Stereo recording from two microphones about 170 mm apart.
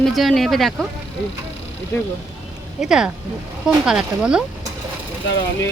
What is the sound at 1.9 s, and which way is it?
Speech, 15° left (ahead or behind).